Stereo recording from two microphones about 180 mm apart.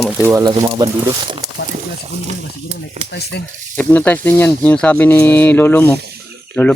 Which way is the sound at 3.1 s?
65° left (ahead or behind).